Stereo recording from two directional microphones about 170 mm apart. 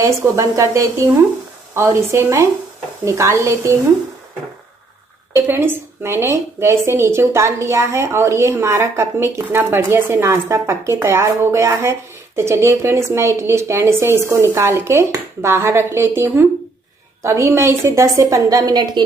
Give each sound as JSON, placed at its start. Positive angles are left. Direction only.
{"t": 0.0, "sound": "a woman's voice", "side_deg": -20}
{"t": 5.3, "sound": "a woman's voice", "side_deg": -15}